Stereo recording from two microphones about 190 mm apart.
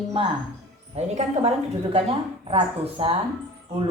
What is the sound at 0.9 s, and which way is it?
A woman's voice, 35° right (ahead or behind).